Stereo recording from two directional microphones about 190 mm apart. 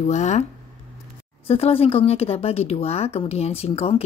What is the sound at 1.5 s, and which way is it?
Speech, 30° left (ahead or behind).